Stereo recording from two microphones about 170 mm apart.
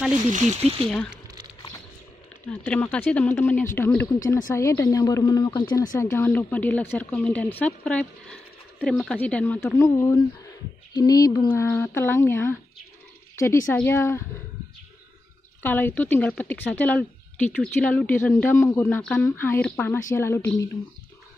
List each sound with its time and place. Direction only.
0.3 s speech: 35° right (ahead or behind)
2.6 s speech: 10° left (ahead or behind)
15.6 s speech: 10° left (ahead or behind)